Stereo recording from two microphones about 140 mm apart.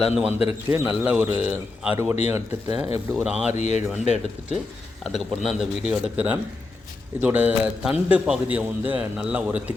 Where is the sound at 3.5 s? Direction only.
55° left (ahead or behind).